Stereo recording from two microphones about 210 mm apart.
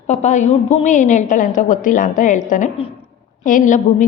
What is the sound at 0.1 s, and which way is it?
A woman's voice, 35° left (ahead or behind).